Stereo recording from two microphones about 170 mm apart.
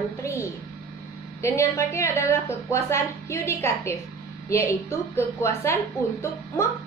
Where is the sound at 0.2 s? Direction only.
15° left (ahead or behind).